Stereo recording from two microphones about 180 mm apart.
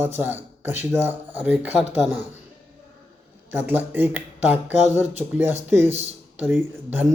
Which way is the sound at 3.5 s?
10° right (ahead or behind).